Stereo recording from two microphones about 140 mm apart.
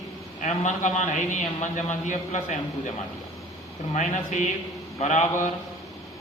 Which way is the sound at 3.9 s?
60° left (ahead or behind).